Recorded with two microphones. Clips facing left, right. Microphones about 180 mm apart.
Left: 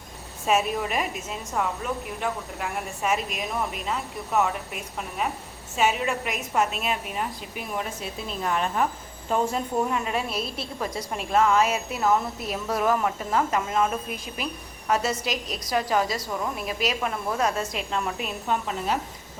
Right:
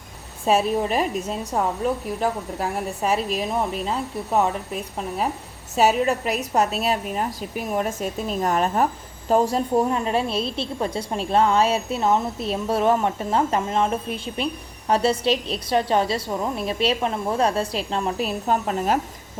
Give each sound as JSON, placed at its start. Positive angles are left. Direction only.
{"t": 0.4, "sound": "a woman's voice", "side_deg": -30}